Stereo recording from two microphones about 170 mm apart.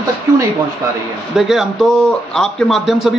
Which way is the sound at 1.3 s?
Centre (ahead or behind).